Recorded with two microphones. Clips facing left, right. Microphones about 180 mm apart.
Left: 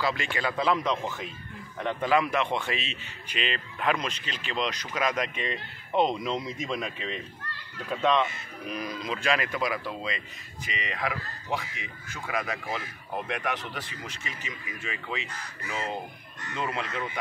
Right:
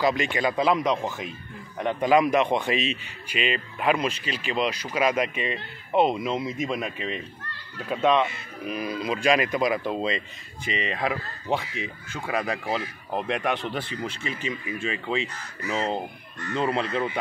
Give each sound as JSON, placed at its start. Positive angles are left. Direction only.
{"t": 0.0, "sound": "a man's voice", "side_deg": -20}